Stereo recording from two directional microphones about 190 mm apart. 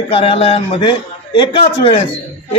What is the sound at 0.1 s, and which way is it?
A man's voice, 30° left (ahead or behind).